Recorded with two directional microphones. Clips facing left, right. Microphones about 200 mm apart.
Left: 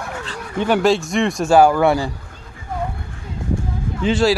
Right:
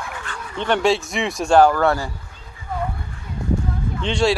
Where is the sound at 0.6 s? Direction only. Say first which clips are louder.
Left 3 dB; 5° left (ahead or behind).